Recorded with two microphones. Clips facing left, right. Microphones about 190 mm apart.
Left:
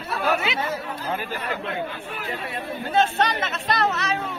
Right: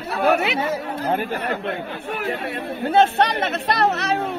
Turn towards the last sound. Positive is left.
turn(degrees=-65)  # may be behind; listen again after turning